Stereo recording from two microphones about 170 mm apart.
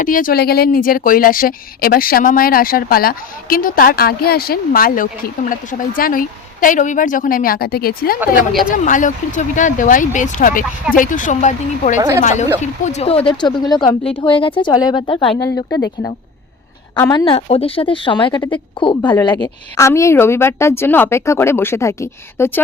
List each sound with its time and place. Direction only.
0.0 s speech: 55° left (ahead or behind)
8.7 s speech: 50° left (ahead or behind)
11.9 s a woman's voice: 15° right (ahead or behind)
12.2 s a woman's voice: 45° left (ahead or behind); by 22.6 s 15° left (ahead or behind)